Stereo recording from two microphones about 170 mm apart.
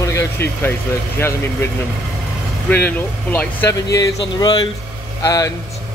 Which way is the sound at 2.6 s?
10° left (ahead or behind).